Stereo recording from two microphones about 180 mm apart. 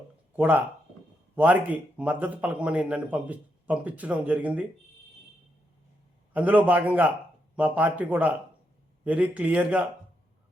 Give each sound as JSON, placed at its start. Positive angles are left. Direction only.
{"t": 0.3, "sound": "speech", "side_deg": -10}
{"t": 6.3, "sound": "speech", "side_deg": -10}